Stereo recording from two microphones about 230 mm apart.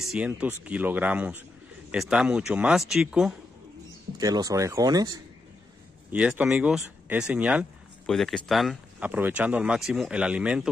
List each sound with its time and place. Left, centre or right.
0.1 s speech: centre
4.2 s speech: centre